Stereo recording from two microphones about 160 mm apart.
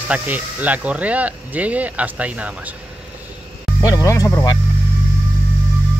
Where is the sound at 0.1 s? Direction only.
10° right (ahead or behind).